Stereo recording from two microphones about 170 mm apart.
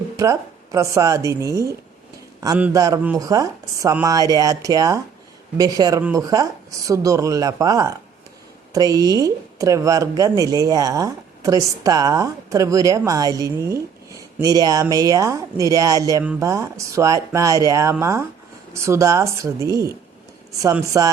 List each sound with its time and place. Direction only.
0.2 s speech: 20° right (ahead or behind)
2.7 s speech: 20° right (ahead or behind)
20.9 s speech: 20° right (ahead or behind)